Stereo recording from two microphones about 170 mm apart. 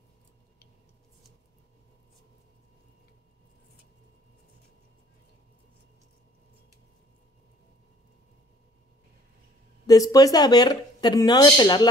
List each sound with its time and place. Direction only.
9.8 s a woman's voice: 20° left (ahead or behind)